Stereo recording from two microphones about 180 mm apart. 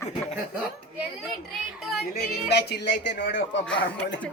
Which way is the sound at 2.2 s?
65° left (ahead or behind).